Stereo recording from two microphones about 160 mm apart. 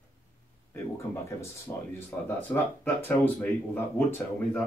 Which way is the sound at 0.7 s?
15° left (ahead or behind).